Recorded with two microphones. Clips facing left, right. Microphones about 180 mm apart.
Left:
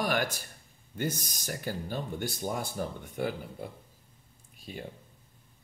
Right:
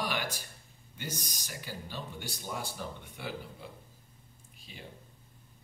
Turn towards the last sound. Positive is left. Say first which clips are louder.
# left 9 dB
turn(degrees=50)  # may be behind; listen again after turning